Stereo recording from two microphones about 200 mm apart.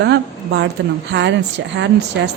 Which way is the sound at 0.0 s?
60° right (ahead or behind).